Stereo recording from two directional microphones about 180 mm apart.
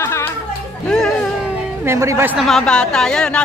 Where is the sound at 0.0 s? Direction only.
15° left (ahead or behind).